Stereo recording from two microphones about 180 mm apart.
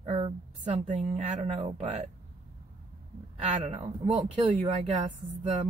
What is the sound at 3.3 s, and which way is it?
Speech, 40° right (ahead or behind).